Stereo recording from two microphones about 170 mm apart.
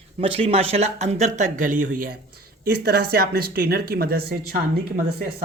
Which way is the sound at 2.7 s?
70° right (ahead or behind).